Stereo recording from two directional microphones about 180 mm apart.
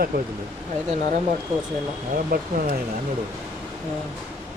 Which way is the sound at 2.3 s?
55° right (ahead or behind).